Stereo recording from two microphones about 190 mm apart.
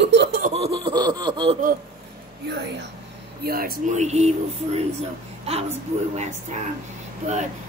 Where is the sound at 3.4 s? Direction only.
50° right (ahead or behind); by 4.8 s 35° right (ahead or behind).